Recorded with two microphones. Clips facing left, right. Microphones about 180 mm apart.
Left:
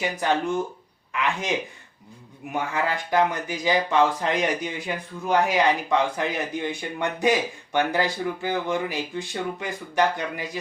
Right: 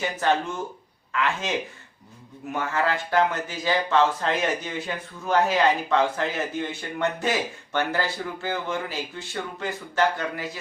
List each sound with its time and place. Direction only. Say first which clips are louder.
0.2 s speech: left 1 dB; 15° left (ahead or behind)
2.7 s speech: even; 15° left (ahead or behind)